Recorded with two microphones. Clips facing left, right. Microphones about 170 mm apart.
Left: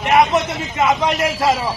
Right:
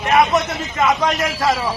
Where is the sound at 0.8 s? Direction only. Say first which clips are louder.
Left 1 dB; 20° left (ahead or behind).